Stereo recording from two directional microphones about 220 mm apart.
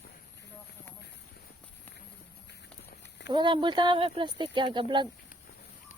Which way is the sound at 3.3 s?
20° right (ahead or behind).